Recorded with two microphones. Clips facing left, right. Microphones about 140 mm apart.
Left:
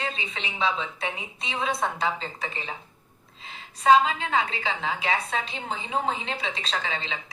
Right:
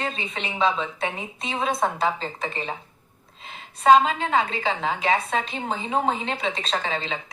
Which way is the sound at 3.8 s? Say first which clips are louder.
Right 3 dB; 40° right (ahead or behind).